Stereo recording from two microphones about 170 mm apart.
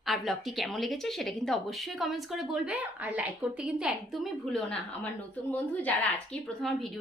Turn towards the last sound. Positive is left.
turn(degrees=5)  # may be behind; listen again after turning